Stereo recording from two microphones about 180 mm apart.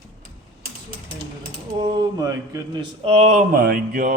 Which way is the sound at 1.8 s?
20° right (ahead or behind).